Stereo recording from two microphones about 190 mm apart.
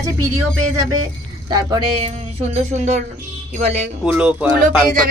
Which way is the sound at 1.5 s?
20° right (ahead or behind).